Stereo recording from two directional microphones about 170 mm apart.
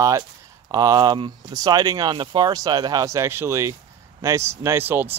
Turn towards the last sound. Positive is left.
turn(degrees=-10)  # may be behind; listen again after turning